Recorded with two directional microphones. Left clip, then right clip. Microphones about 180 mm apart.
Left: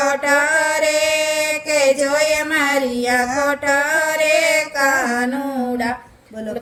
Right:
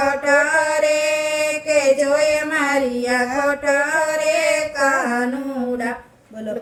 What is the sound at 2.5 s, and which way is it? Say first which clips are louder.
Child singing: left 1 dB; 30° left (ahead or behind).